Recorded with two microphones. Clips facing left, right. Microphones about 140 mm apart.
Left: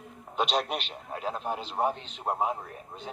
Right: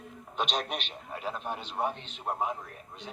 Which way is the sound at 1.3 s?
30° left (ahead or behind).